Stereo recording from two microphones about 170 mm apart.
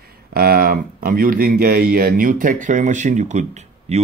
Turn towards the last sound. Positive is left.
turn(degrees=-45)  # may be behind; listen again after turning